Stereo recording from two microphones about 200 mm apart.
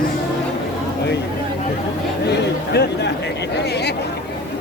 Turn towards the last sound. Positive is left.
turn(degrees=55)  # may be behind; listen again after turning